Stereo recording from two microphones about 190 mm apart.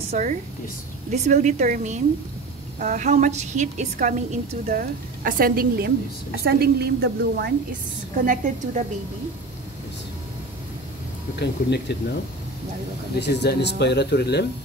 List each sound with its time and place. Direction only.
0.1 s a woman's voice: 40° right (ahead or behind)
11.3 s speech: 60° left (ahead or behind)
13.2 s speech: 60° left (ahead or behind)